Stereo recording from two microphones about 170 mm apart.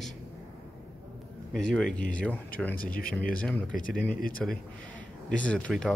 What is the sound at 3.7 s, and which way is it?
Speech, 55° left (ahead or behind).